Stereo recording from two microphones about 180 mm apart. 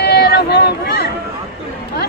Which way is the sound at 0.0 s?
65° left (ahead or behind).